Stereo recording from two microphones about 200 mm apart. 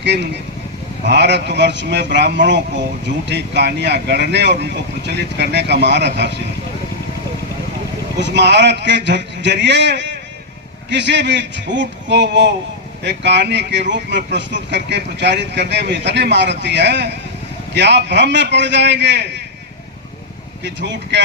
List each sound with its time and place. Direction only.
0.0 s speech: 60° right (ahead or behind)
8.2 s speech: 60° right (ahead or behind)
20.7 s speech: 60° right (ahead or behind)